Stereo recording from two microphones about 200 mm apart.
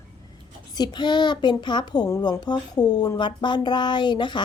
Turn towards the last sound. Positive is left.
turn(degrees=20)  # may be behind; listen again after turning